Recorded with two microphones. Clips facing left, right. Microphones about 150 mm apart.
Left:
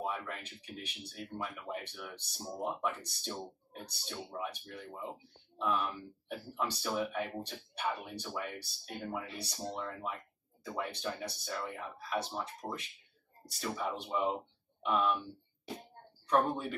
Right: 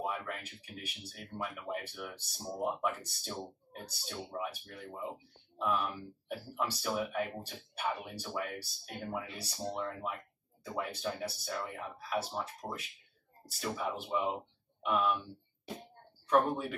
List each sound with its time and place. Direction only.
0.0 s speech: 5° right (ahead or behind)
6.2 s speech: 5° right (ahead or behind)
16.3 s speech: centre (ahead or behind)